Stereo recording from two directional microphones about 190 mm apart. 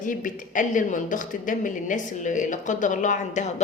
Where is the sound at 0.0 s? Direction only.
45° left (ahead or behind).